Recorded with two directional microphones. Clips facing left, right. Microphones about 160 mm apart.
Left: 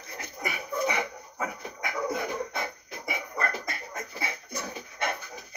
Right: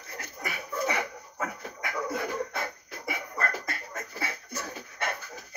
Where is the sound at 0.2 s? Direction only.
15° left (ahead or behind).